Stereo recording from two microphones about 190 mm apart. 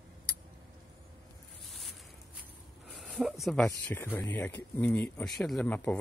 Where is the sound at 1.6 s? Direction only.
Centre (ahead or behind).